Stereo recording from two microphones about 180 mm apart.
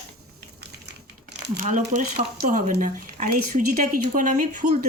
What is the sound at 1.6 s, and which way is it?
Speech, 45° right (ahead or behind).